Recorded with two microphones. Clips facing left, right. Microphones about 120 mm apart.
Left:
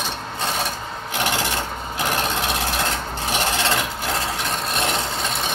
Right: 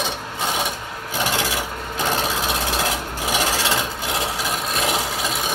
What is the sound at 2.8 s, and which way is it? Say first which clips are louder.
Sewing machine: right 1 dB; 5° right (ahead or behind).